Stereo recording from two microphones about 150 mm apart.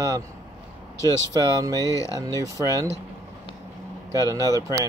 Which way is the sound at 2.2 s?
20° right (ahead or behind).